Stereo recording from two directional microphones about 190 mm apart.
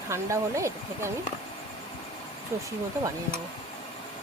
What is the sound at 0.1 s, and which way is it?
Speech, 15° right (ahead or behind).